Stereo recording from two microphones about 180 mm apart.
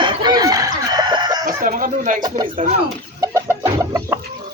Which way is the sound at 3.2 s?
15° right (ahead or behind).